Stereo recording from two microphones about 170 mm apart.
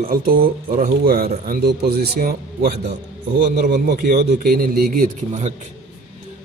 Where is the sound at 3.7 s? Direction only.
55° right (ahead or behind).